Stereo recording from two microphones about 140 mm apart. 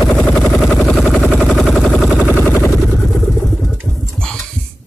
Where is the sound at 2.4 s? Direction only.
20° left (ahead or behind).